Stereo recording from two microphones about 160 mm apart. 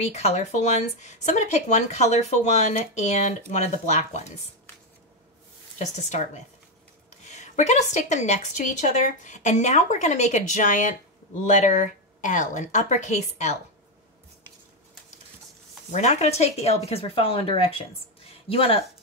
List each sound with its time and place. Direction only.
0.0 s speech: 45° left (ahead or behind)
5.8 s speech: 45° left (ahead or behind)
15.9 s speech: 45° left (ahead or behind)